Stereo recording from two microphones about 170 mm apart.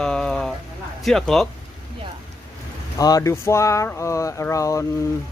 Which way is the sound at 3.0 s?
20° left (ahead or behind).